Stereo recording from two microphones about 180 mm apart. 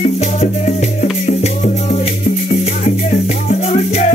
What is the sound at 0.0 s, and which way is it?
Music, 40° left (ahead or behind).